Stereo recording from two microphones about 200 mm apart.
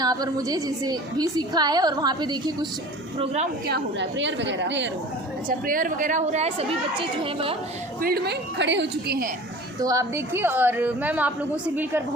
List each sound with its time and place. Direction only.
0.0 s a woman's voice: 20° right (ahead or behind)
3.2 s a woman's voice: 35° right (ahead or behind)
3.7 s a woman's voice: 65° right (ahead or behind)
5.5 s a woman's voice: 45° right (ahead or behind)
8.0 s a woman's voice: 50° right (ahead or behind)
9.8 s a woman's voice: 15° right (ahead or behind)